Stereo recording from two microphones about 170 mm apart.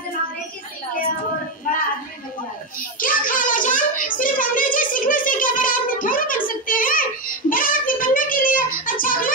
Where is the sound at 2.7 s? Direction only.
55° left (ahead or behind).